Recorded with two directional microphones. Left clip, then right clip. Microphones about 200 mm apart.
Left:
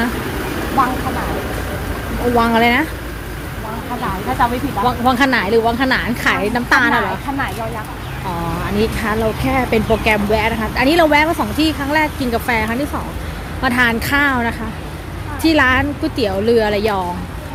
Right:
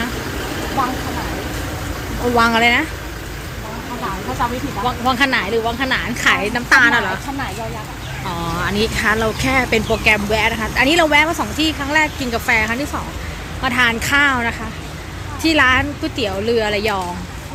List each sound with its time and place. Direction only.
2.4 s speech: 10° left (ahead or behind)
4.4 s speech: 25° left (ahead or behind); by 7.2 s 10° left (ahead or behind)
8.8 s speech: 5° left (ahead or behind)